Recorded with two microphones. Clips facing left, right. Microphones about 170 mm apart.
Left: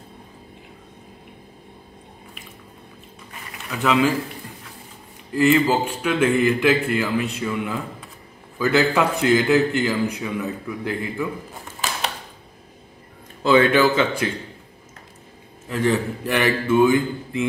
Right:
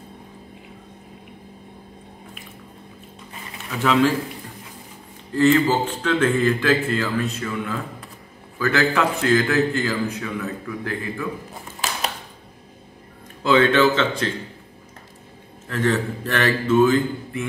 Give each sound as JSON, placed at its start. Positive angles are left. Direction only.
{"t": 3.7, "sound": "a man's voice", "side_deg": 0}
{"t": 5.3, "sound": "a man's voice", "side_deg": 10}
{"t": 13.4, "sound": "a man's voice", "side_deg": 15}
{"t": 15.7, "sound": "a man's voice", "side_deg": 15}